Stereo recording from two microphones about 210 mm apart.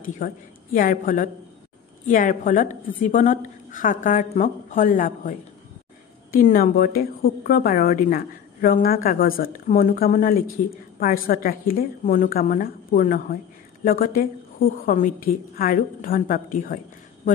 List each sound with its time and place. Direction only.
0.2 s a woman's voice: 40° left (ahead or behind)
6.3 s a woman's voice: 40° left (ahead or behind)